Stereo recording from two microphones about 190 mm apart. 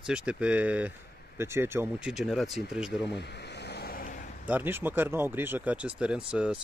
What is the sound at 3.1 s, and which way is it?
Vehicle, 65° left (ahead or behind).